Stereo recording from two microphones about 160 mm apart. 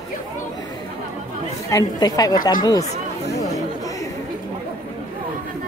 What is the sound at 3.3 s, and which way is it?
Chatter, 20° left (ahead or behind).